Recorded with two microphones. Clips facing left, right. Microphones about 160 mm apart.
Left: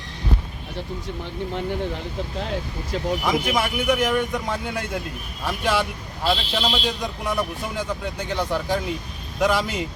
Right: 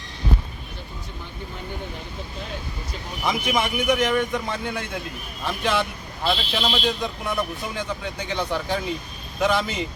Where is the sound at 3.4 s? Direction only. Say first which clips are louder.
Even; 5° left (ahead or behind).